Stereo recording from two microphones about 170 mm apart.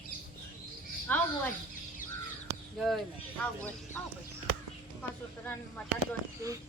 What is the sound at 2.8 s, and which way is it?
Speech, centre (ahead or behind).